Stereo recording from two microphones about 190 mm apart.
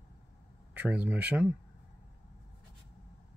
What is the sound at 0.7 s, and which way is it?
Speech, 10° right (ahead or behind).